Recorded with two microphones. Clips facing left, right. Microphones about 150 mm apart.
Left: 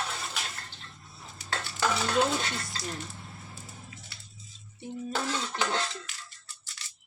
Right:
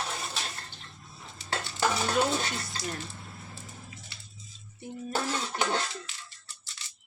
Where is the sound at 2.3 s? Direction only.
25° right (ahead or behind).